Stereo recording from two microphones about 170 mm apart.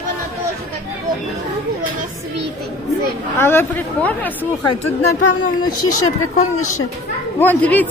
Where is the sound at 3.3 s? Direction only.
15° left (ahead or behind).